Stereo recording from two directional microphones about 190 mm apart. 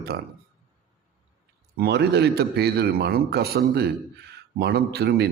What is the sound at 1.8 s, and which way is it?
A man's voice, 60° right (ahead or behind).